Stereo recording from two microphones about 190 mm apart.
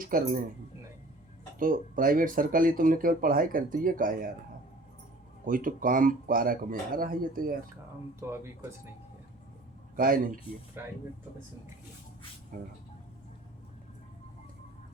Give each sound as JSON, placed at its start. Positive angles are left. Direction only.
{"t": 0.0, "sound": "speech", "side_deg": -45}
{"t": 1.5, "sound": "speech", "side_deg": -45}
{"t": 5.5, "sound": "speech", "side_deg": -45}
{"t": 8.2, "sound": "speech", "side_deg": -15}
{"t": 9.9, "sound": "a man's voice", "side_deg": -45}
{"t": 10.8, "sound": "speech", "side_deg": -10}
{"t": 12.5, "sound": "speech", "side_deg": -45}